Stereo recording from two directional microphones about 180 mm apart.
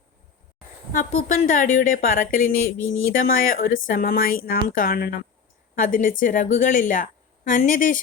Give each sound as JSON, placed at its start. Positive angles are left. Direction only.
{"t": 0.9, "sound": "a woman's voice", "side_deg": 45}